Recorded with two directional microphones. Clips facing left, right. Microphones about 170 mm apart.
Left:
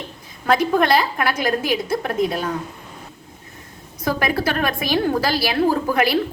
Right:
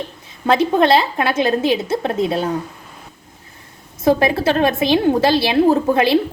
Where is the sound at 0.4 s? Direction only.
25° right (ahead or behind).